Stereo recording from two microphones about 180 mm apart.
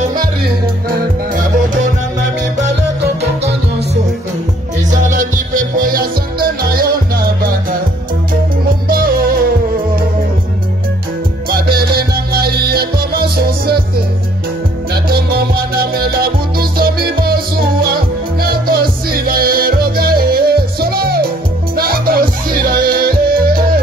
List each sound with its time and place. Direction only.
0.1 s music: 55° right (ahead or behind)
2.7 s music: 65° right (ahead or behind)
5.0 s music: 45° right (ahead or behind)
8.8 s music: 55° right (ahead or behind)
11.7 s music: 60° right (ahead or behind)
15.0 s music: 60° right (ahead or behind)